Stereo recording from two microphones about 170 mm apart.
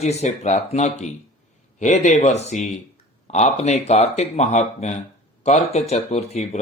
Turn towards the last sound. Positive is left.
turn(degrees=40)  # may be behind; listen again after turning